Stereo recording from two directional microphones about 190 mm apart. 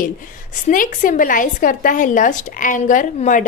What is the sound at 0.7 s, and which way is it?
A woman's voice, 45° left (ahead or behind).